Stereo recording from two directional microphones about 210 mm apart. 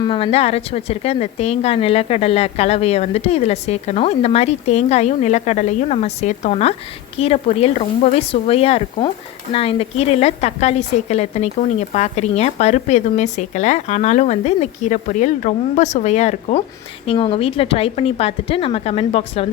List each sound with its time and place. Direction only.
0.0 s a woman's voice: 25° left (ahead or behind)